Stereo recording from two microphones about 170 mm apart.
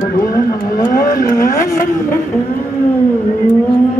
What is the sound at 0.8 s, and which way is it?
Vehicle, 55° left (ahead or behind).